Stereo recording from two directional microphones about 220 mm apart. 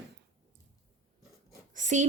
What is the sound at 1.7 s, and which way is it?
Speech, 35° right (ahead or behind).